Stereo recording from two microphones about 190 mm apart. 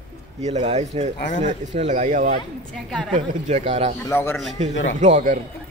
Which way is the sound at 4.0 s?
15° left (ahead or behind).